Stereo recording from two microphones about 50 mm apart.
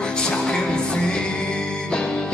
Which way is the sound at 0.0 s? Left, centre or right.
Centre.